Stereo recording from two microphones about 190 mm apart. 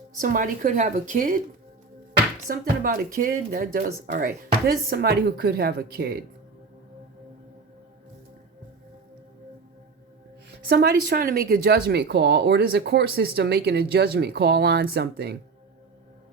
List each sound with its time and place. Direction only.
0.2 s speech: 45° right (ahead or behind)
2.5 s speech: 50° right (ahead or behind)
10.7 s speech: 60° right (ahead or behind)